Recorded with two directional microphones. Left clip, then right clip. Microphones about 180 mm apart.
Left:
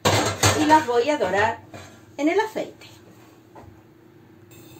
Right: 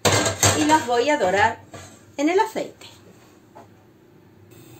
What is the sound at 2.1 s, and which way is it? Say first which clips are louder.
Speech: right 2 dB; 50° right (ahead or behind).